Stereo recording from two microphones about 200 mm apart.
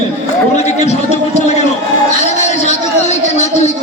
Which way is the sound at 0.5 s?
35° left (ahead or behind).